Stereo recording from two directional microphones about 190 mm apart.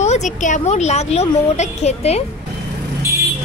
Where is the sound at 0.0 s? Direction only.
40° left (ahead or behind).